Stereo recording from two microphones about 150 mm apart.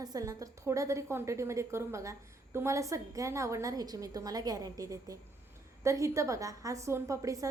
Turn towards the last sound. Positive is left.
turn(degrees=-20)  # may be behind; listen again after turning